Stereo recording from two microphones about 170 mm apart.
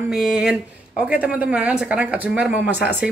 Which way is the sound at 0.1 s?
Centre (ahead or behind).